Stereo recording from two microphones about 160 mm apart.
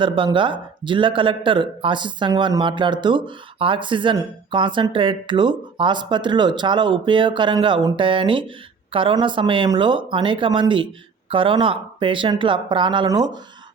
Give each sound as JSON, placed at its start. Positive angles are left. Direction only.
{"t": 0.0, "sound": "speech", "side_deg": -30}